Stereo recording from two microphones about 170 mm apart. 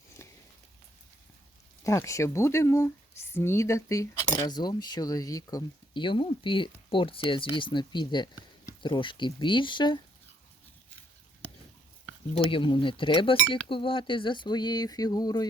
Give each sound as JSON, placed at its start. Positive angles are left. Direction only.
{"t": 0.2, "sound": "a sound", "side_deg": 15}
{"t": 1.8, "sound": "speech", "side_deg": 20}
{"t": 12.3, "sound": "speech", "side_deg": 30}